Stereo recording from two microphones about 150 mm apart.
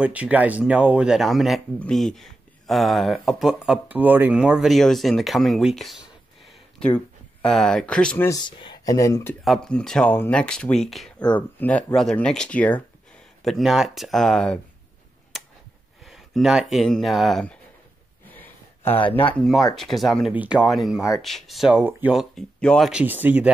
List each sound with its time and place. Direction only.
0.0 s speech: 10° right (ahead or behind); by 8.3 s 5° left (ahead or behind)
8.3 s speech: 30° left (ahead or behind)
9.4 s speech: centre (ahead or behind)
15.3 s a sound: centre (ahead or behind)
16.0 s speech: centre (ahead or behind)
18.3 s a sound: 15° left (ahead or behind)
19.3 s speech: centre (ahead or behind)
22.8 s speech: 10° right (ahead or behind)